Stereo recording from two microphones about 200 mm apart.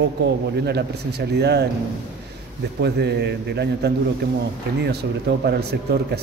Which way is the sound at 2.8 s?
55° right (ahead or behind).